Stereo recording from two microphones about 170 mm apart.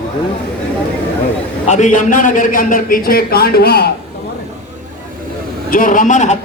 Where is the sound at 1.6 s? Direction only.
45° left (ahead or behind); by 3.9 s 70° left (ahead or behind).